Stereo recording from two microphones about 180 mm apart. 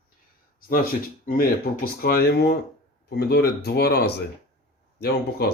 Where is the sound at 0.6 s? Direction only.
50° left (ahead or behind).